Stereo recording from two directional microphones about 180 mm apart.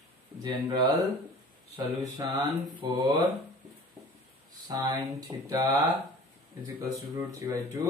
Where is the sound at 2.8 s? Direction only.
25° right (ahead or behind).